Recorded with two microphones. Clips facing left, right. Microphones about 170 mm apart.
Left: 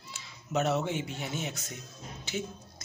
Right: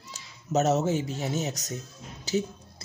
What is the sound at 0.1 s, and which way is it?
A man's voice, 40° right (ahead or behind).